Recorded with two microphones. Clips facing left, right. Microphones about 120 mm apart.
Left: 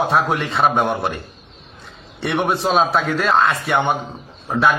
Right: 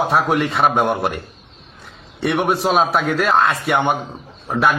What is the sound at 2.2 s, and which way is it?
A man's voice, 5° right (ahead or behind).